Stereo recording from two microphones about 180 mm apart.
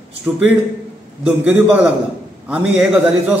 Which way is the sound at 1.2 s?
5° right (ahead or behind).